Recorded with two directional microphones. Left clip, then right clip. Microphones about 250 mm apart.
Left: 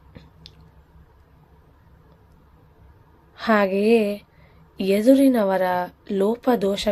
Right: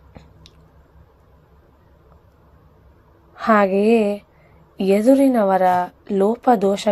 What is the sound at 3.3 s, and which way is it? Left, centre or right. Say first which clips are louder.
A woman's voice: right 4 dB; centre.